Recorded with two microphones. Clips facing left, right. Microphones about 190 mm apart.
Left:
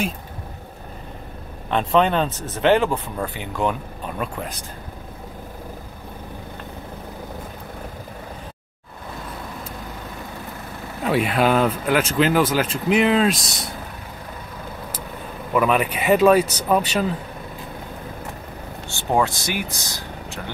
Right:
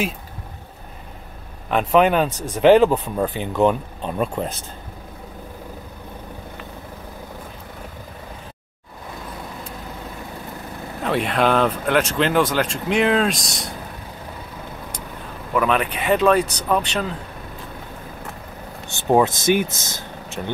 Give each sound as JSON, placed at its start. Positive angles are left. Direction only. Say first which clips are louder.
{"t": 1.7, "sound": "speech", "louder": "right 2 dB", "side_deg": -5}
{"t": 11.1, "sound": "speech", "louder": "left 1 dB", "side_deg": 5}
{"t": 15.5, "sound": "speech", "louder": "left 1 dB", "side_deg": 5}
{"t": 18.9, "sound": "speech", "louder": "right 4 dB", "side_deg": -20}